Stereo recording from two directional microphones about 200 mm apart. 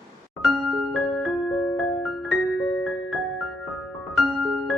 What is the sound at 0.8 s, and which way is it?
Music, centre (ahead or behind).